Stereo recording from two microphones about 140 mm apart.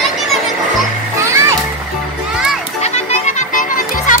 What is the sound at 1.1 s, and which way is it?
Music, 20° right (ahead or behind).